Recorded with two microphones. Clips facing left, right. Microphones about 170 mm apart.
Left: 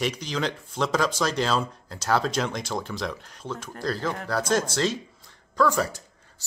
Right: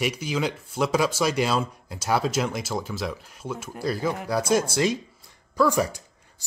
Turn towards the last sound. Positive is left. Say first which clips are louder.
# even
turn(degrees=-15)  # may be behind; listen again after turning